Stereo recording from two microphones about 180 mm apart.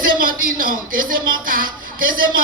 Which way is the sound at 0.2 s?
50° right (ahead or behind).